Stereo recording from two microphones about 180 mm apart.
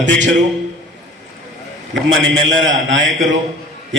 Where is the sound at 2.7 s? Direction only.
90° right.